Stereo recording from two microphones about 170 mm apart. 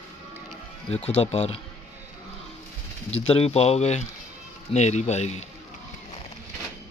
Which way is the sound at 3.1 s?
35° left (ahead or behind).